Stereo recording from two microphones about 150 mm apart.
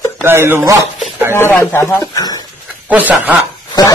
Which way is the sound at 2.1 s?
25° left (ahead or behind).